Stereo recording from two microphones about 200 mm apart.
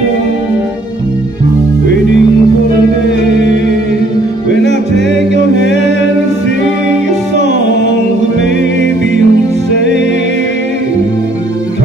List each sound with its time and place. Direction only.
4.5 s music: 60° left (ahead or behind)
7.3 s music: 65° left (ahead or behind)